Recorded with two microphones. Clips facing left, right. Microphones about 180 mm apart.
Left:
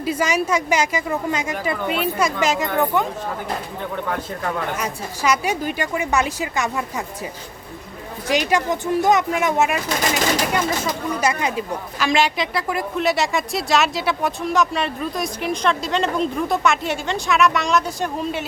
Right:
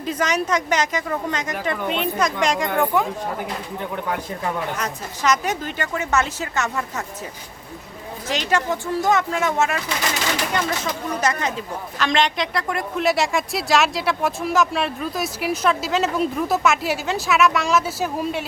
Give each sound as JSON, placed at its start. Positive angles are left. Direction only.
{"t": 0.0, "sound": "speech", "side_deg": 10}
{"t": 4.8, "sound": "speech", "side_deg": 10}
{"t": 8.3, "sound": "speech", "side_deg": 10}